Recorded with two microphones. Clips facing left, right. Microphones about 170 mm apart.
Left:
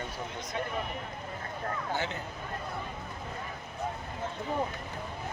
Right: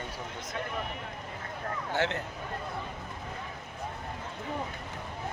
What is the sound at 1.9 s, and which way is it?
Speech, 75° right (ahead or behind).